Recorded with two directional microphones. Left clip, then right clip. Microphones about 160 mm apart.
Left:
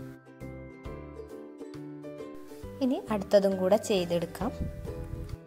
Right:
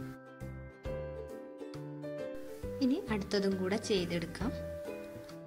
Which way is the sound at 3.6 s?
15° left (ahead or behind).